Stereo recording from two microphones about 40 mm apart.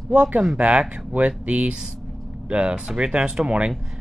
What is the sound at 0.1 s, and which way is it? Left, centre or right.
Speech, right.